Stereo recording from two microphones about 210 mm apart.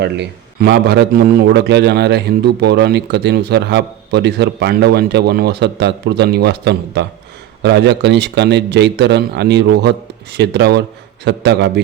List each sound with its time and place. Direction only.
0.0 s a man's voice: 55° right (ahead or behind)